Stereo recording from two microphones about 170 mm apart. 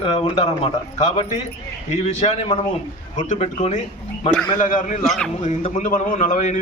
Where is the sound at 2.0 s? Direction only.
40° left (ahead or behind).